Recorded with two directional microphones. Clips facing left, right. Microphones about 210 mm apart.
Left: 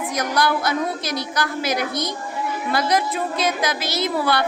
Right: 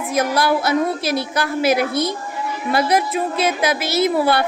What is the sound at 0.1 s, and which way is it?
A woman's voice, 25° right (ahead or behind).